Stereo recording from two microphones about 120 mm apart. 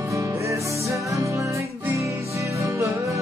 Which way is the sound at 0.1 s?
25° right (ahead or behind).